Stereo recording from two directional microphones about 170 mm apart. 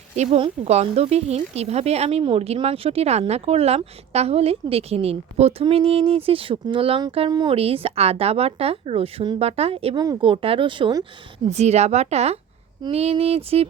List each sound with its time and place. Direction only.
0.2 s speech: 30° right (ahead or behind)
11.4 s speech: 40° right (ahead or behind)